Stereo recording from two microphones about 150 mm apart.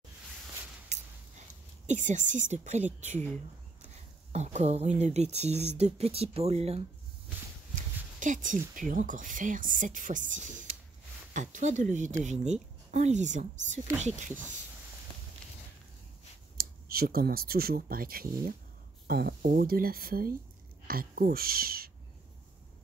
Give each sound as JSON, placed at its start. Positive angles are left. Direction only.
{"t": 0.9, "sound": "a sound", "side_deg": -50}
{"t": 1.9, "sound": "speech", "side_deg": -55}
{"t": 7.7, "sound": "speech", "side_deg": -60}
{"t": 16.5, "sound": "speech", "side_deg": -80}